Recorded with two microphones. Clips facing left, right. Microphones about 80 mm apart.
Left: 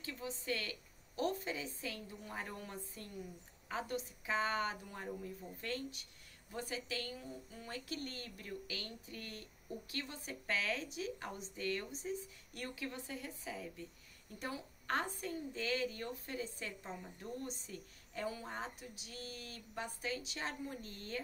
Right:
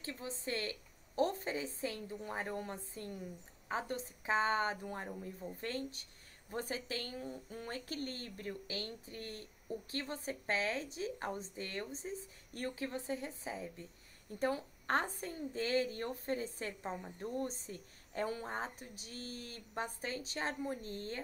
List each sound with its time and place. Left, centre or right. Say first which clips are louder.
0.0 s a woman's voice: right 2 dB; right